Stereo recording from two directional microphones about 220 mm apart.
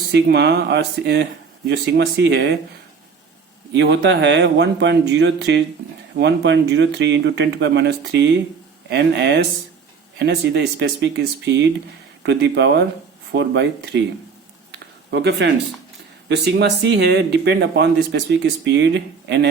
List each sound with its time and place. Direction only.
0.1 s speech: 50° right (ahead or behind)
3.8 s speech: 50° right (ahead or behind)
14.7 s a sound: 50° right (ahead or behind)
16.3 s speech: 50° right (ahead or behind)